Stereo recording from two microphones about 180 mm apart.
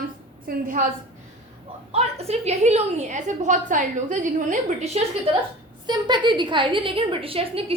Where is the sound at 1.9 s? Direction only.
35° right (ahead or behind).